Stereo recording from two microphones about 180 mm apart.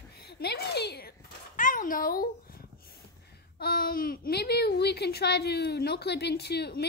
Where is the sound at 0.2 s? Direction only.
65° left (ahead or behind).